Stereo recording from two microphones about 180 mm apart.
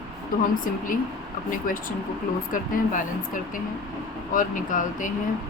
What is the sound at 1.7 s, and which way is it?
Speech, 50° left (ahead or behind).